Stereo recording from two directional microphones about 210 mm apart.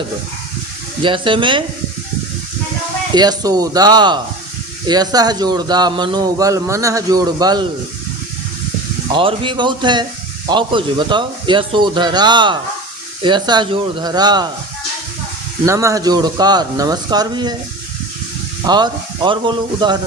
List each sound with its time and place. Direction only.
1.0 s speech: 25° right (ahead or behind)
3.2 s speech: 20° right (ahead or behind)
9.1 s speech: 25° right (ahead or behind)
15.6 s speech: 15° right (ahead or behind)
18.6 s speech: 20° right (ahead or behind)